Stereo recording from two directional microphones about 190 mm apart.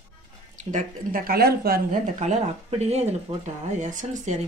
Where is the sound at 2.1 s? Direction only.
35° right (ahead or behind).